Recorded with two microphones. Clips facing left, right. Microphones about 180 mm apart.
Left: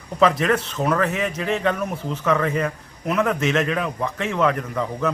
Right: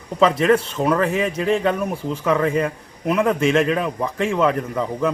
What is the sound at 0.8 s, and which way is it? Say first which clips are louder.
Speech: right 2 dB; 10° right (ahead or behind).